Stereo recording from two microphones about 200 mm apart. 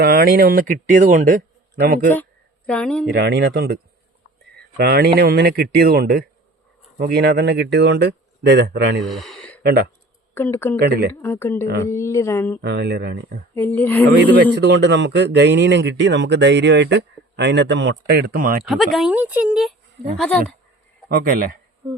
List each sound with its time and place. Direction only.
0.0 s a man's voice: 50° right (ahead or behind)
2.6 s speech: 5° left (ahead or behind)
3.1 s a man's voice: 55° right (ahead or behind)
9.0 s a sound: centre (ahead or behind)
9.6 s a man's voice: 55° right (ahead or behind)
10.3 s a woman's voice: 10° left (ahead or behind)
10.8 s a man's voice: 50° right (ahead or behind)
11.1 s a woman's voice: 10° left (ahead or behind)
12.6 s a man's voice: 60° right (ahead or behind)
13.6 s a woman's voice: 10° left (ahead or behind)
14.2 s a man's voice: 60° right (ahead or behind)
18.7 s speech: centre (ahead or behind)
21.1 s a man's voice: 45° right (ahead or behind)
21.8 s a sound: 20° right (ahead or behind)